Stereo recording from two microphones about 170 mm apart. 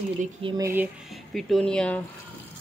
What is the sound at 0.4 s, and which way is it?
Speech, 30° right (ahead or behind).